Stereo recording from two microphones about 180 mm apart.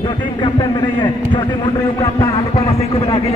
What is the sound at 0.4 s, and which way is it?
A man's voice, 25° left (ahead or behind).